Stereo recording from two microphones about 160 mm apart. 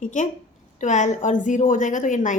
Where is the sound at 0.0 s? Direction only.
50° left (ahead or behind).